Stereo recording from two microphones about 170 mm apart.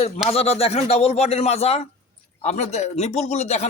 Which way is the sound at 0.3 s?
35° left (ahead or behind).